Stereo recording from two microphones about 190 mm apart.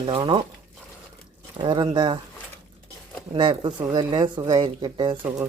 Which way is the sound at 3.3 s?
25° right (ahead or behind).